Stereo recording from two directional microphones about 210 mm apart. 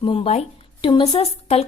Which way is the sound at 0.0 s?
25° left (ahead or behind).